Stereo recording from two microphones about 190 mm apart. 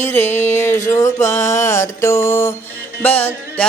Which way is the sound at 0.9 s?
15° left (ahead or behind).